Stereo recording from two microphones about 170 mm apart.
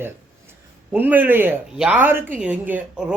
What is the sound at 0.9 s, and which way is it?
A woman's voice, 10° right (ahead or behind).